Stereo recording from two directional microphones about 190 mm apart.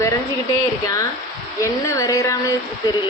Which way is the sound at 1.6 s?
15° left (ahead or behind).